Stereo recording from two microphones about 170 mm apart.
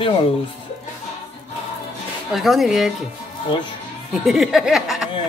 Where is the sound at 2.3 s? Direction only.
Centre (ahead or behind).